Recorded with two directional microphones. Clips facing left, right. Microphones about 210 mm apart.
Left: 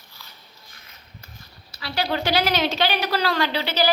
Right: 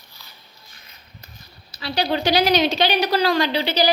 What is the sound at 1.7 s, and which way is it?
A woman's voice, 20° right (ahead or behind).